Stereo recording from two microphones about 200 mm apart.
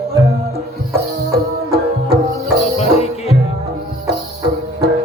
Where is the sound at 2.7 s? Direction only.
30° left (ahead or behind).